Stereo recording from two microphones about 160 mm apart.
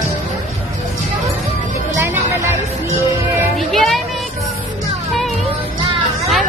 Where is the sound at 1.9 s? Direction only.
15° right (ahead or behind).